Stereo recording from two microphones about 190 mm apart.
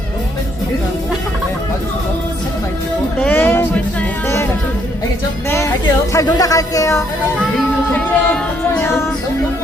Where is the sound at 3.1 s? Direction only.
5° left (ahead or behind).